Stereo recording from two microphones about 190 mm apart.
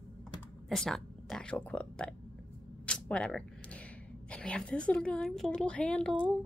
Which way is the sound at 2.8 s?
5° left (ahead or behind).